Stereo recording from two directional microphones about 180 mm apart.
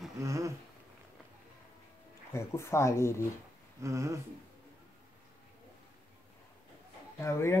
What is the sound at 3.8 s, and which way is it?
Speech, 15° right (ahead or behind).